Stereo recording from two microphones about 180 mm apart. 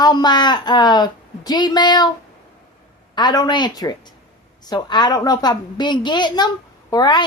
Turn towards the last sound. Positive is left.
turn(degrees=25)  # may be behind; listen again after turning